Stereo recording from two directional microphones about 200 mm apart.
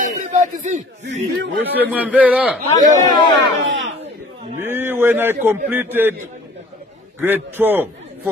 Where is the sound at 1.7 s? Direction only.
10° right (ahead or behind).